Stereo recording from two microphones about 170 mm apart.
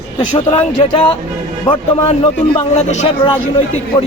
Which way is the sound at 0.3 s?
30° left (ahead or behind).